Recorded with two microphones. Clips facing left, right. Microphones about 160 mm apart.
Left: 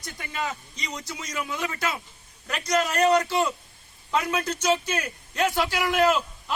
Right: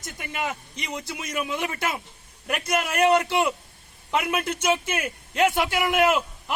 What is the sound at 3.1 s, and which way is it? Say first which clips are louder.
A man's voice: right 1 dB; 25° right (ahead or behind).